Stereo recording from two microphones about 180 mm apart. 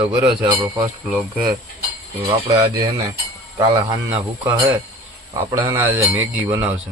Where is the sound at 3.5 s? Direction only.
20° right (ahead or behind).